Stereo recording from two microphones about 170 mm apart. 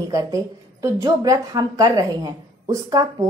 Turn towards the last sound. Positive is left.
turn(degrees=-20)  # may be behind; listen again after turning